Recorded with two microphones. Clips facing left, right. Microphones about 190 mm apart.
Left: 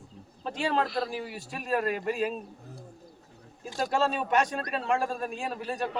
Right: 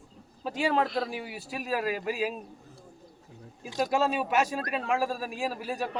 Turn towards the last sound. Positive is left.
turn(degrees=-5)  # may be behind; listen again after turning